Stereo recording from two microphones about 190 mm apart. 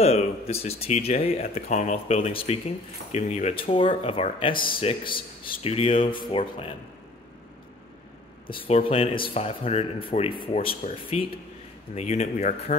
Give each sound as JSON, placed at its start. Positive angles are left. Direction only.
{"t": 0.0, "sound": "speech", "side_deg": 35}
{"t": 8.5, "sound": "speech", "side_deg": 30}